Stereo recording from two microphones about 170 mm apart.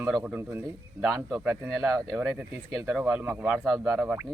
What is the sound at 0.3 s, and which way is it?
Speech, 15° right (ahead or behind).